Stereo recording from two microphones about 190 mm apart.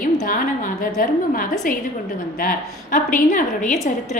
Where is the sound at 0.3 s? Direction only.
45° left (ahead or behind).